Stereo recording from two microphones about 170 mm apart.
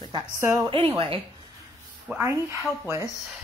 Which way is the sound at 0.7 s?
30° right (ahead or behind).